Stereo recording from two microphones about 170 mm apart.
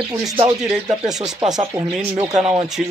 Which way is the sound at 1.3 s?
20° right (ahead or behind).